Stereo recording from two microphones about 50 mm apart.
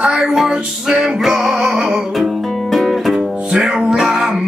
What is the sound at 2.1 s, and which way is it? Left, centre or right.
Music, centre.